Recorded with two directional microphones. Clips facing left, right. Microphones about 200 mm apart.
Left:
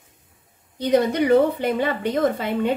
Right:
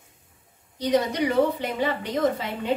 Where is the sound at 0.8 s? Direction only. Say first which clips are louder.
Left 4 dB; 55° left (ahead or behind).